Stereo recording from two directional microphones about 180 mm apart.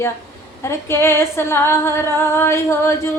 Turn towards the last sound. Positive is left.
turn(degrees=15)  # may be behind; listen again after turning